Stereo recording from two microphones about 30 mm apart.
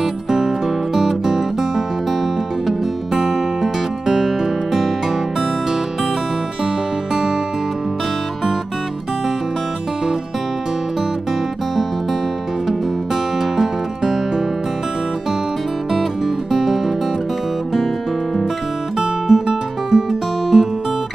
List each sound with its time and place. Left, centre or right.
0.0 s music: centre
3.2 s music: centre
13.6 s music: centre
16.5 s music: centre
18.9 s music: centre